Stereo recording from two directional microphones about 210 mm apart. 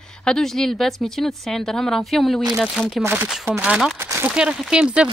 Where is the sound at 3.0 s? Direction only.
10° right (ahead or behind).